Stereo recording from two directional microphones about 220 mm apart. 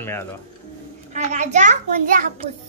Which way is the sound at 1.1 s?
30° right (ahead or behind).